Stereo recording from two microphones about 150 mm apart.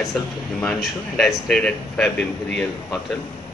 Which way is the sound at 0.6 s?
5° left (ahead or behind).